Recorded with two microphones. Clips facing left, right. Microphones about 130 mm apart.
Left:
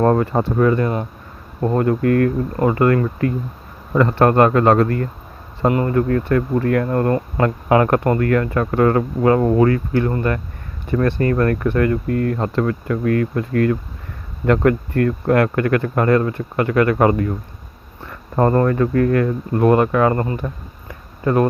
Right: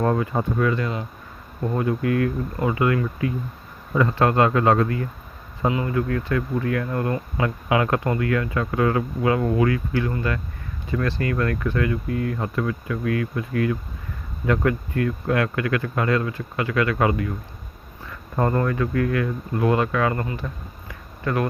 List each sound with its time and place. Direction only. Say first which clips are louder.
0.0 s speech: left 6 dB; 50° left (ahead or behind)
3.9 s speech: left 5 dB; 65° left (ahead or behind)
4.3 s speech: left 5 dB; 55° left (ahead or behind)
14.4 s speech: left 6 dB; 60° left (ahead or behind); by 20.4 s 35° left (ahead or behind)
20.8 s a sound: left 7 dB; 30° left (ahead or behind)